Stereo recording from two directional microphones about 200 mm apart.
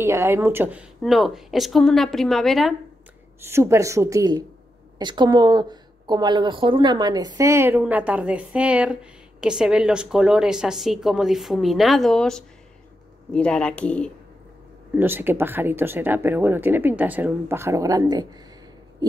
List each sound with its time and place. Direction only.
0.0 s a woman's voice: 15° right (ahead or behind)
3.3 s a woman's voice: 15° right (ahead or behind); by 14.1 s 5° left (ahead or behind)
15.0 s speech: 10° right (ahead or behind)